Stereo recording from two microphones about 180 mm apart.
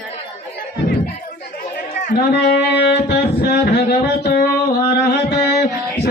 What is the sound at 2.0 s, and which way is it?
Speech, 65° left (ahead or behind).